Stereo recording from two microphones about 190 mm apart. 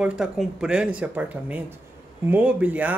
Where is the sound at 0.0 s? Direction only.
5° right (ahead or behind).